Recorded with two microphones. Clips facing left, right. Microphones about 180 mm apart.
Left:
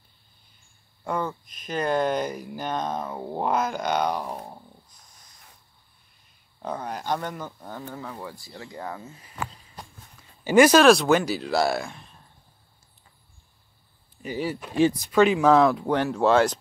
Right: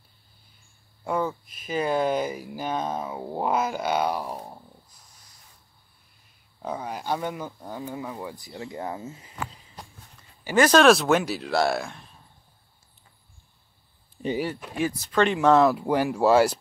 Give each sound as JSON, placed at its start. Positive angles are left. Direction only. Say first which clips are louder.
{"t": 1.0, "sound": "speech", "louder": "right 2 dB", "side_deg": -5}
{"t": 6.6, "sound": "speech", "louder": "even", "side_deg": -5}
{"t": 10.4, "sound": "speech", "louder": "left 4 dB", "side_deg": 15}
{"t": 10.8, "sound": "speech", "louder": "left 1 dB", "side_deg": 0}
{"t": 14.2, "sound": "speech", "louder": "right 6 dB", "side_deg": -30}
{"t": 15.0, "sound": "speech", "louder": "left 3 dB", "side_deg": 10}